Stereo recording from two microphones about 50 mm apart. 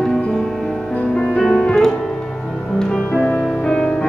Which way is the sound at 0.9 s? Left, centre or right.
Centre.